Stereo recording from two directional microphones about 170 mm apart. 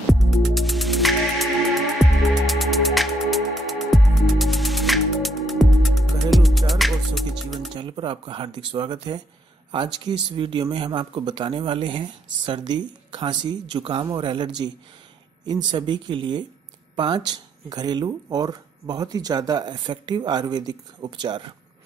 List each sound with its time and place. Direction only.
0.1 s music: centre (ahead or behind)
7.7 s pigeon: 30° right (ahead or behind)
8.7 s speech: 30° right (ahead or behind)